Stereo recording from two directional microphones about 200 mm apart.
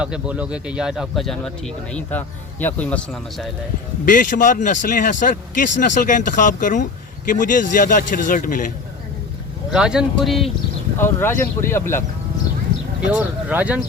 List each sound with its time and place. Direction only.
0.0 s speech: 5° right (ahead or behind)
4.0 s speech: 40° left (ahead or behind)
9.7 s speech: 5° right (ahead or behind)
10.9 s speech: 10° left (ahead or behind)
13.1 s speech: 10° right (ahead or behind)